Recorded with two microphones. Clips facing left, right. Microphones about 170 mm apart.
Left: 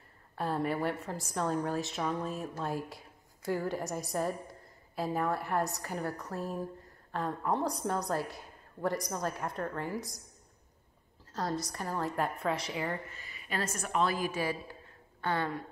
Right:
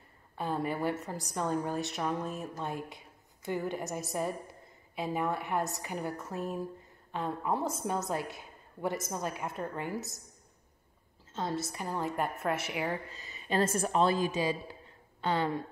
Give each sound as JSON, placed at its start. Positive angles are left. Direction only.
{"t": 0.4, "sound": "a woman's voice", "side_deg": 0}
{"t": 12.0, "sound": "a woman's voice", "side_deg": 0}
{"t": 13.3, "sound": "a woman's voice", "side_deg": -30}